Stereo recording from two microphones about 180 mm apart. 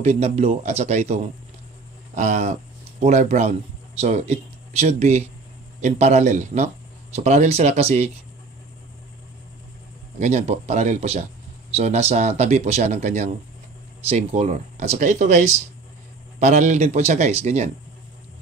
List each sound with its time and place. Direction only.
0.0 s speech: 35° right (ahead or behind)
10.1 s speech: 40° right (ahead or behind)